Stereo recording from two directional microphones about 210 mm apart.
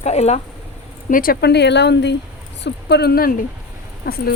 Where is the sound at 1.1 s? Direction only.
45° left (ahead or behind).